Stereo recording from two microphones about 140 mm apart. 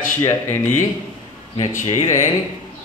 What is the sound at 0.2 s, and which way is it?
Speech, 20° left (ahead or behind).